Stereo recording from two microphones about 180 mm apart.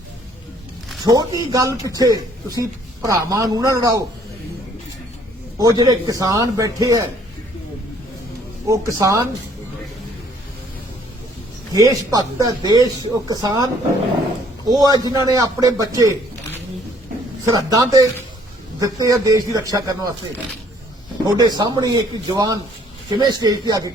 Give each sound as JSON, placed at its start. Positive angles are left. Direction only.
{"t": 1.0, "sound": "a man's voice", "side_deg": -20}
{"t": 5.5, "sound": "a man's voice", "side_deg": -20}
{"t": 8.7, "sound": "speech", "side_deg": -20}
{"t": 11.7, "sound": "a man's voice", "side_deg": -20}
{"t": 14.7, "sound": "a man's voice", "side_deg": -20}
{"t": 17.7, "sound": "a man's voice", "side_deg": -20}
{"t": 21.2, "sound": "a man's voice", "side_deg": -20}